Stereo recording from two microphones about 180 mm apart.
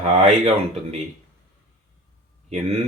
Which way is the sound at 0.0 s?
40° right (ahead or behind).